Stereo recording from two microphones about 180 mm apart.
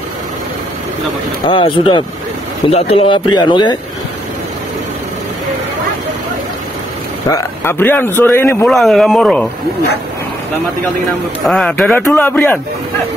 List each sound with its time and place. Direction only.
1.4 s speech: 30° left (ahead or behind)
7.2 s speech: 15° left (ahead or behind)
8.6 s speech: centre (ahead or behind)
11.4 s speech: 5° left (ahead or behind)